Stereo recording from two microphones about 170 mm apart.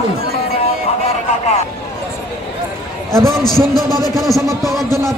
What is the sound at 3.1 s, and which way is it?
A man's voice, centre (ahead or behind).